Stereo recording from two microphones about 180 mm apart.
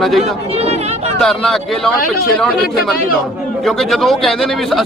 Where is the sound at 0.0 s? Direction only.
Centre (ahead or behind).